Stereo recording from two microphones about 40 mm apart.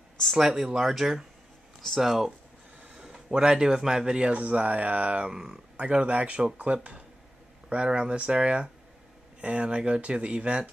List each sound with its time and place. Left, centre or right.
0.4 s a man's voice: centre
4.2 s speech: right
5.3 s speech: centre
5.8 s speech: right